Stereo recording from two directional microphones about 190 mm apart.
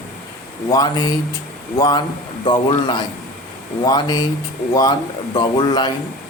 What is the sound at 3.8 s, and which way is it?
Speech, 20° left (ahead or behind).